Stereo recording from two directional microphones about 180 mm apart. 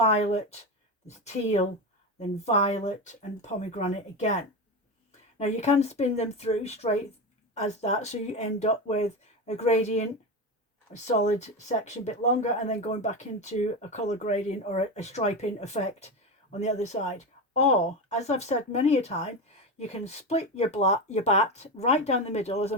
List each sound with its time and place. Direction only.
0.0 s speech: 35° left (ahead or behind)